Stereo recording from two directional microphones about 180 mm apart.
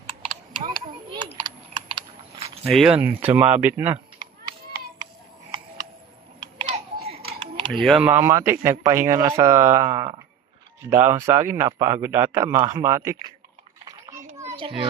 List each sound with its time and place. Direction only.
1.1 s typing: 25° right (ahead or behind)
2.6 s speech: centre (ahead or behind)
4.4 s a sound: 20° right (ahead or behind)
6.4 s typing: 25° right (ahead or behind)
7.7 s speech: centre (ahead or behind); by 13.1 s 15° right (ahead or behind)
14.5 s a child's voice: 25° right (ahead or behind)